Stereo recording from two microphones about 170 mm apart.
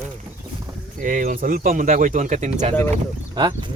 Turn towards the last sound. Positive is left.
turn(degrees=-25)  # may be behind; listen again after turning